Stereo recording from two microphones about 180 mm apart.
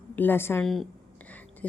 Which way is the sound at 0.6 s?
Centre (ahead or behind).